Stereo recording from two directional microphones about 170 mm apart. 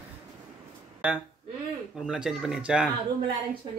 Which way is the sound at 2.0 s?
5° right (ahead or behind).